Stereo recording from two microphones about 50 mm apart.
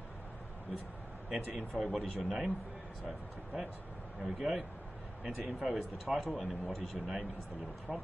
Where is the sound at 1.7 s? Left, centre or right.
Centre.